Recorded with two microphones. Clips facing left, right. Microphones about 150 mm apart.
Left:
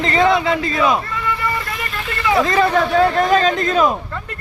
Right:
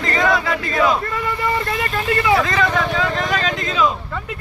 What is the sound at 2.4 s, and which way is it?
Speech, 45° left (ahead or behind).